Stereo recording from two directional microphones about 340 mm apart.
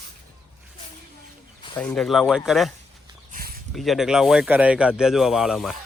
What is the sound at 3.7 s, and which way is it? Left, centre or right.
Speech, centre.